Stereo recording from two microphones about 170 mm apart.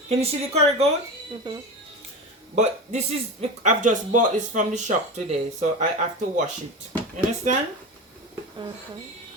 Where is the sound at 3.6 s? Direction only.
50° right (ahead or behind).